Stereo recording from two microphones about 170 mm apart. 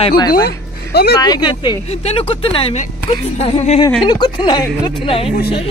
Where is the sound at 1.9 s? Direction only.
35° left (ahead or behind).